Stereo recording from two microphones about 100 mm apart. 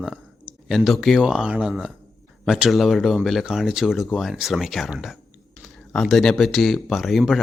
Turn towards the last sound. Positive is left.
turn(degrees=0)  # may be behind; listen again after turning